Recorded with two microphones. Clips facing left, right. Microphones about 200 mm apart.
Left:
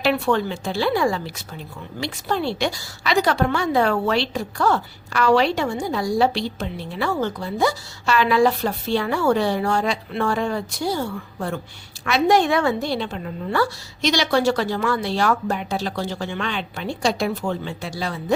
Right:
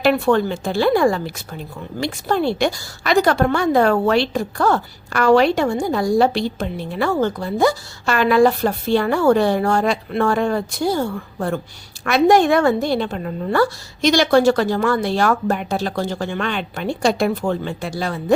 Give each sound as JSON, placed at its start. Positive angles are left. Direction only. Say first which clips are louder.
{"t": 0.0, "sound": "a woman's voice", "louder": "right 4 dB", "side_deg": -50}